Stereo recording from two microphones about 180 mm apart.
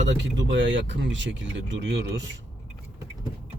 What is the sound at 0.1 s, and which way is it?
A man's voice, 85° right.